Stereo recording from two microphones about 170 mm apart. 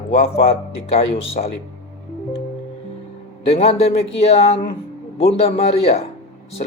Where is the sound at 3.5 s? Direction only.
40° left (ahead or behind).